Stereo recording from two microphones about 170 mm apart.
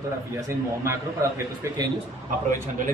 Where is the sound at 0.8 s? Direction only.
15° right (ahead or behind).